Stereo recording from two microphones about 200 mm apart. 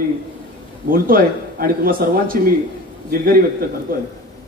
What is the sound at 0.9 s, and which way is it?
A man's voice, 45° right (ahead or behind).